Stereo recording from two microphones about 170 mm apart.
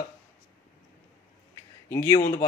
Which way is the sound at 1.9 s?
15° left (ahead or behind).